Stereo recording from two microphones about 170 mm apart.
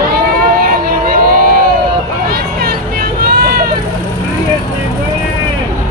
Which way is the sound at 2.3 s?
65° right (ahead or behind).